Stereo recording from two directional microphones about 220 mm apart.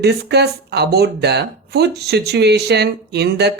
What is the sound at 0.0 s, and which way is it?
Speech, 50° right (ahead or behind).